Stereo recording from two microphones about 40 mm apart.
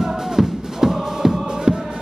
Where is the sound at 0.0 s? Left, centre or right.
Centre.